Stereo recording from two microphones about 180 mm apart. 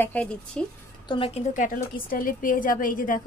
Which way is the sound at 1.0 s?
30° left (ahead or behind).